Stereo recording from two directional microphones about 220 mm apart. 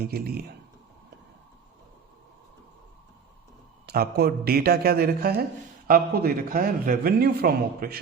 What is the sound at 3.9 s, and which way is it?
A man's voice, 45° right (ahead or behind).